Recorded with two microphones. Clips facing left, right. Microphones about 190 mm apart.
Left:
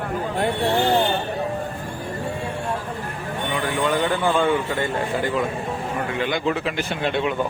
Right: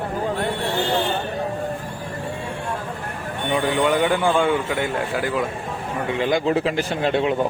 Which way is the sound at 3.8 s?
15° right (ahead or behind).